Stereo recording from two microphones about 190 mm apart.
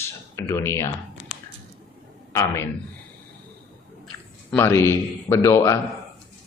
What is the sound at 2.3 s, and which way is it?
Speech, 15° left (ahead or behind).